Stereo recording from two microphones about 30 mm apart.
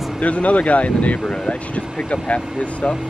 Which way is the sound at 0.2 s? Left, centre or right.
Left.